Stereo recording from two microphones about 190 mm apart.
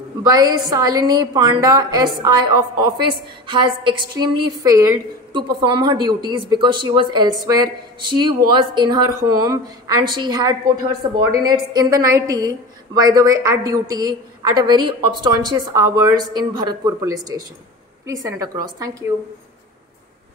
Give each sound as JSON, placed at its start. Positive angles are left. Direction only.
{"t": 0.3, "sound": "a woman's voice", "side_deg": -20}